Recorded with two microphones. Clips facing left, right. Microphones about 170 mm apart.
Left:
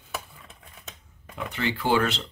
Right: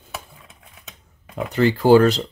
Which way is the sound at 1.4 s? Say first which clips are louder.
Right 10 dB; 40° right (ahead or behind).